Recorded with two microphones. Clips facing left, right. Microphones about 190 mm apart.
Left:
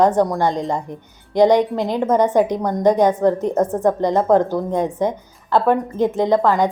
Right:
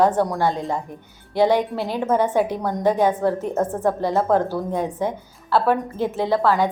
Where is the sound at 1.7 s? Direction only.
15° left (ahead or behind).